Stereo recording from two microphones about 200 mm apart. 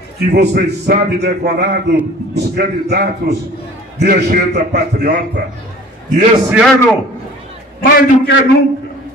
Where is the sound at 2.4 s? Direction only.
55° right (ahead or behind).